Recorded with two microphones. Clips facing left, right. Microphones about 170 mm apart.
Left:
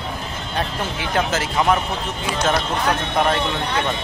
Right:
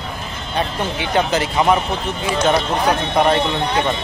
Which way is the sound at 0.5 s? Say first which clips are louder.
Right 4 dB; centre (ahead or behind).